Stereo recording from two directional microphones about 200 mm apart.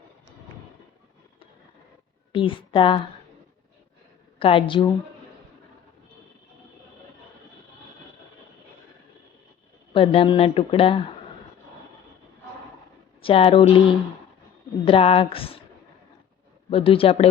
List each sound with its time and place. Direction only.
2.3 s speech: 25° left (ahead or behind)
4.4 s speech: 25° left (ahead or behind)
9.9 s speech: 25° left (ahead or behind)
13.2 s speech: 25° left (ahead or behind)
16.6 s speech: 25° left (ahead or behind)